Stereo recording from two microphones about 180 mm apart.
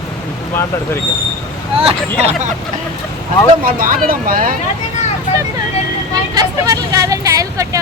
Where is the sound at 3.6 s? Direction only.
50° right (ahead or behind).